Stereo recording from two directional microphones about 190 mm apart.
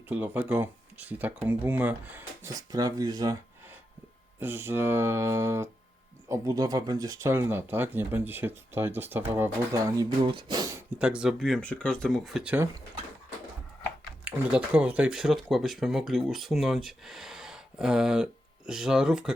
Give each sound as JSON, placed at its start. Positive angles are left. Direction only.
{"t": 0.1, "sound": "speech", "side_deg": -10}
{"t": 4.4, "sound": "speech", "side_deg": -10}
{"t": 10.9, "sound": "speech", "side_deg": -5}
{"t": 14.3, "sound": "speech", "side_deg": -5}